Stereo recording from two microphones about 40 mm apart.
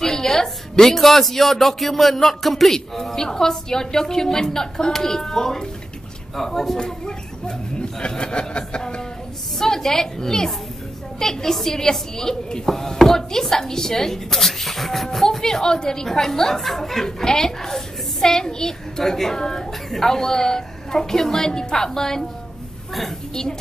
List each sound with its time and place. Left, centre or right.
0.0 s a woman's voice: centre
6.8 s speech: centre
8.0 s a sound: left
9.6 s a woman's voice: centre